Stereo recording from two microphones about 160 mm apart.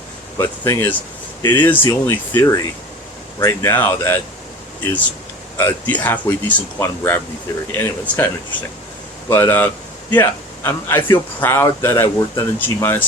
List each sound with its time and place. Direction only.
0.3 s a man's voice: 15° left (ahead or behind)
9.3 s a man's voice: 10° left (ahead or behind)